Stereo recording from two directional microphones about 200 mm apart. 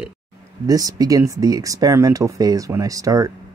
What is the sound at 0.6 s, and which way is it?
Speech, 20° right (ahead or behind).